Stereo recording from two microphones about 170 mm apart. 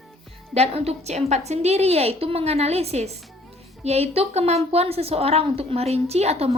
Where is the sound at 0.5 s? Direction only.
35° right (ahead or behind).